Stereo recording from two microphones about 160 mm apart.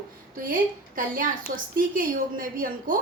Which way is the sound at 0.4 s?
60° right (ahead or behind).